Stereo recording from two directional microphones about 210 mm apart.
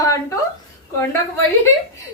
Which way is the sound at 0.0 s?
15° left (ahead or behind).